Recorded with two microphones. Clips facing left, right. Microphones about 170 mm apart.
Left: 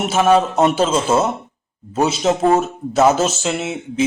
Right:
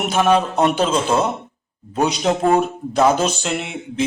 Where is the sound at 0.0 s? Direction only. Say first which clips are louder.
Left 2 dB; 5° left (ahead or behind).